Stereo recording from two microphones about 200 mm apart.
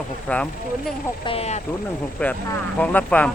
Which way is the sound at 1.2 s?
30° left (ahead or behind).